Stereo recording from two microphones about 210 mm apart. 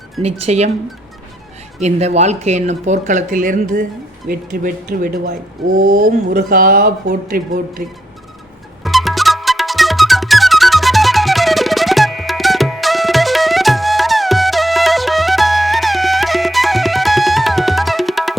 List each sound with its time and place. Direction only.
0.2 s speech: 30° right (ahead or behind)
1.8 s speech: 30° right (ahead or behind)
5.7 s speech: 80° right
6.3 s speech: 40° right (ahead or behind)
8.8 s music: centre (ahead or behind)